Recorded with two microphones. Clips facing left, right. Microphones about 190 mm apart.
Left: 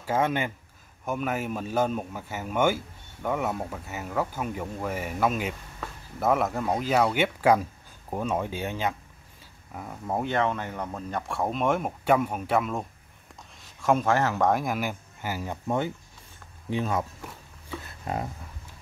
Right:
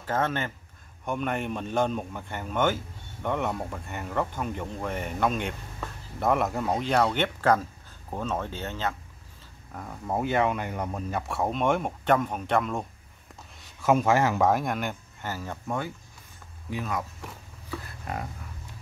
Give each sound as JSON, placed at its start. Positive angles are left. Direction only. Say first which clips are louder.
{"t": 0.0, "sound": "speech", "louder": "left 2 dB", "side_deg": 10}
{"t": 14.5, "sound": "speech", "louder": "even", "side_deg": 0}
{"t": 18.0, "sound": "speech", "louder": "left 5 dB", "side_deg": 25}